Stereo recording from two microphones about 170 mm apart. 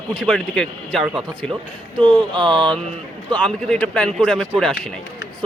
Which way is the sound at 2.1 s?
25° right (ahead or behind).